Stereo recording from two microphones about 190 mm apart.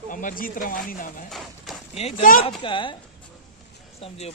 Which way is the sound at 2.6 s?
25° left (ahead or behind).